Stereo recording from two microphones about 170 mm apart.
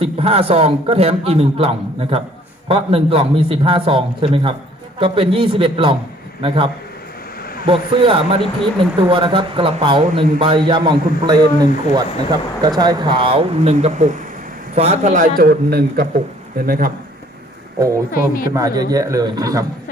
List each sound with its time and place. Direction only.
0.0 s a man's voice: 35° right (ahead or behind); by 16.9 s 55° right (ahead or behind)
17.7 s speech: 15° right (ahead or behind)
18.1 s speech: 60° left (ahead or behind)
18.5 s a man's voice: 20° right (ahead or behind)